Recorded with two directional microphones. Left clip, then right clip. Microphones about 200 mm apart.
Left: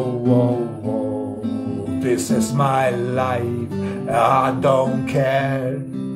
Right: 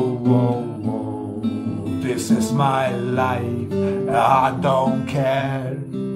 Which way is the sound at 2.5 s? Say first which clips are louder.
Left 2 dB; 15° left (ahead or behind).